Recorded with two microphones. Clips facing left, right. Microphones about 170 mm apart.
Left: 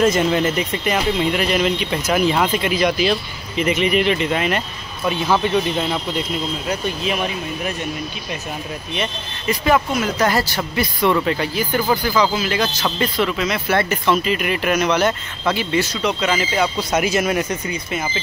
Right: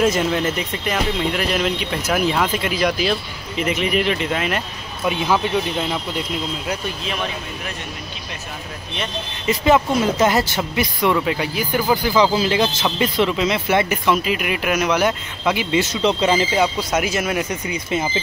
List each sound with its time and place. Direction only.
0.0 s speech: centre (ahead or behind)
5.0 s speech: 15° right (ahead or behind)
9.5 s speech: 25° right (ahead or behind)
16.6 s speech: 5° right (ahead or behind)